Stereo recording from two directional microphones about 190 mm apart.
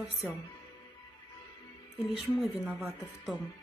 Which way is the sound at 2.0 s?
30° left (ahead or behind).